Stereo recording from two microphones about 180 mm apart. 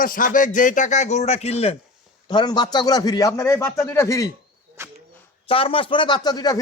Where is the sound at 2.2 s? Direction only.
25° left (ahead or behind).